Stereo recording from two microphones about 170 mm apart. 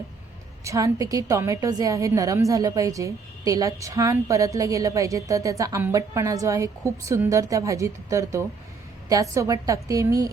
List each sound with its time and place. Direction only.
0.6 s a woman's voice: 20° right (ahead or behind)